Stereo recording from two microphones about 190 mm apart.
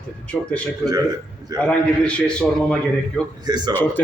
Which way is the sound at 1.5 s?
5° left (ahead or behind).